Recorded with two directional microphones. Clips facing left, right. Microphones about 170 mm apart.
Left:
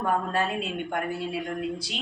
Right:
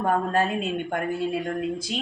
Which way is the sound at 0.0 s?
45° right (ahead or behind).